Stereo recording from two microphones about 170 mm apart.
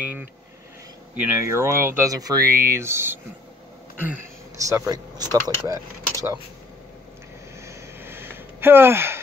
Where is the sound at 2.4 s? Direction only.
60° right (ahead or behind).